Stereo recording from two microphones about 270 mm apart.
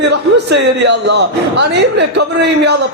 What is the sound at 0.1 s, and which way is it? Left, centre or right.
A man's voice, right.